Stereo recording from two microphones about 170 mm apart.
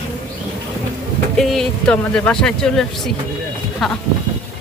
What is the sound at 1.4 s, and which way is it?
Speech, centre (ahead or behind).